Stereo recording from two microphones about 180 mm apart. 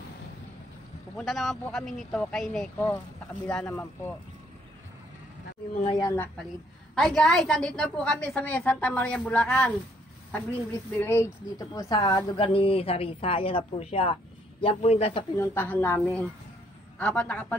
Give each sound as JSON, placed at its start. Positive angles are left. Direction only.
{"t": 1.1, "sound": "a woman's voice", "side_deg": 0}
{"t": 5.9, "sound": "speech", "side_deg": 20}
{"t": 7.0, "sound": "a woman's voice", "side_deg": 5}
{"t": 11.0, "sound": "a woman's voice", "side_deg": 15}
{"t": 12.4, "sound": "speech", "side_deg": 30}
{"t": 15.3, "sound": "a woman's voice", "side_deg": 10}